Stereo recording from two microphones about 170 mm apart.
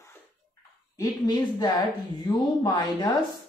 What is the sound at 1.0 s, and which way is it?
Speech, 25° left (ahead or behind).